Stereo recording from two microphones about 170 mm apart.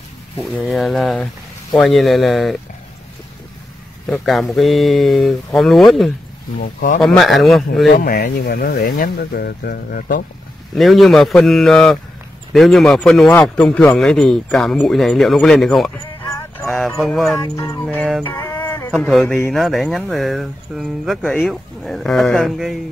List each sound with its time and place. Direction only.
0.4 s speech: centre (ahead or behind)
4.1 s speech: centre (ahead or behind)
6.6 s speech: 50° left (ahead or behind)
7.0 s speech: 5° left (ahead or behind)
7.9 s speech: 65° left (ahead or behind)
10.8 s speech: centre (ahead or behind)
16.6 s a sound: centre (ahead or behind)
17.0 s speech: centre (ahead or behind)
17.4 s speech: 20° left (ahead or behind)
17.8 s speech: centre (ahead or behind)
18.3 s a sound: 10° left (ahead or behind)
18.6 s cat: 25° left (ahead or behind)
18.9 s speech: centre (ahead or behind)